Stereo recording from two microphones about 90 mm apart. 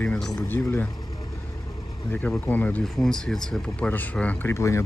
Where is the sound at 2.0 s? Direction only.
20° left (ahead or behind).